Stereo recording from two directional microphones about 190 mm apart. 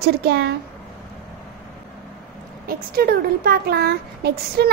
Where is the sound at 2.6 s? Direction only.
50° right (ahead or behind).